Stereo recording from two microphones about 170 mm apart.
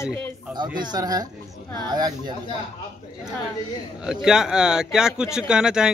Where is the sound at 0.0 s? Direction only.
15° left (ahead or behind).